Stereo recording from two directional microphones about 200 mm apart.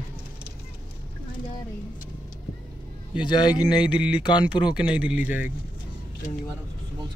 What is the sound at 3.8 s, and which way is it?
Speech, 5° right (ahead or behind).